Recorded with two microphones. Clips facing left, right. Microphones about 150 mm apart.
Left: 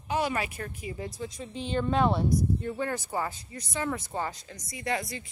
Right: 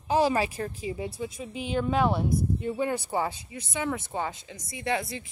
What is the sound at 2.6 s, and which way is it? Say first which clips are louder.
Speech: right 3 dB; 15° right (ahead or behind).